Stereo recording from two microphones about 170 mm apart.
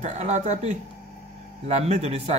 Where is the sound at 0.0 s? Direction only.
45° right (ahead or behind).